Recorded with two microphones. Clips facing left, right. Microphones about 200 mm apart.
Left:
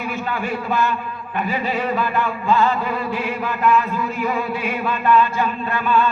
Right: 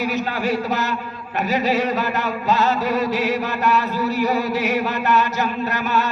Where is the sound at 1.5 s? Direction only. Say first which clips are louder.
Right 3 dB; 80° right.